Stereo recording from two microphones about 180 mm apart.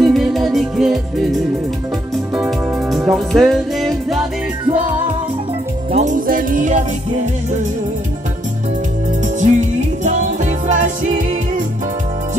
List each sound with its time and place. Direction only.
0.0 s music: centre (ahead or behind)
2.9 s music: centre (ahead or behind)
5.9 s music: 35° right (ahead or behind)
6.2 s music: 50° right (ahead or behind)
9.2 s music: 45° right (ahead or behind)